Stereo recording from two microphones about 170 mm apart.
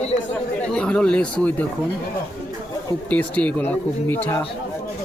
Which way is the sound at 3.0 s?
5° left (ahead or behind).